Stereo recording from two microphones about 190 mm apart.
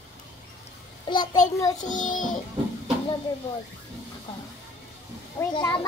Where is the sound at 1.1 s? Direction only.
25° left (ahead or behind).